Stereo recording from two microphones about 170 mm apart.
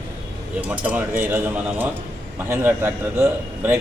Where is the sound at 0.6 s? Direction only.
10° right (ahead or behind).